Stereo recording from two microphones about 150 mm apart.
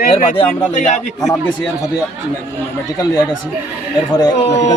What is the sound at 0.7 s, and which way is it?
Speech, 55° left (ahead or behind).